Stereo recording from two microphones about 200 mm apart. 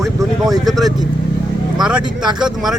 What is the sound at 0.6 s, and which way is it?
Speech, centre (ahead or behind).